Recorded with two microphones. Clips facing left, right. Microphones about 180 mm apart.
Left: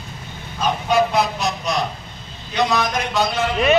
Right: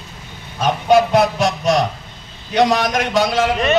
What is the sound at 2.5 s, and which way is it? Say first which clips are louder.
Speech: right 5 dB; 90° right.